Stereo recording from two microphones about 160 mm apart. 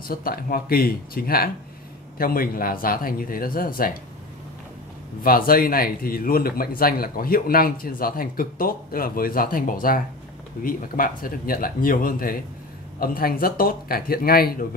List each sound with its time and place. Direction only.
0.1 s a man's voice: 70° left (ahead or behind)
5.2 s a man's voice: 65° left (ahead or behind)